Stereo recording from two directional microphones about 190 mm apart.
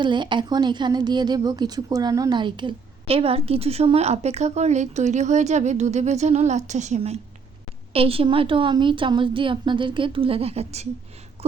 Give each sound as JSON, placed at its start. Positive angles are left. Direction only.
{"t": 0.0, "sound": "a woman's voice", "side_deg": -25}